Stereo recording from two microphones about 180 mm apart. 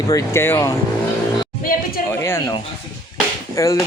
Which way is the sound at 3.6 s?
15° left (ahead or behind).